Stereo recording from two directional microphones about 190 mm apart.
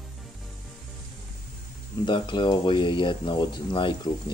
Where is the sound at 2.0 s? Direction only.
25° left (ahead or behind).